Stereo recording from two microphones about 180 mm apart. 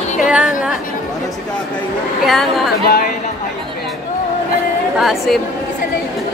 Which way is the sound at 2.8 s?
50° left (ahead or behind).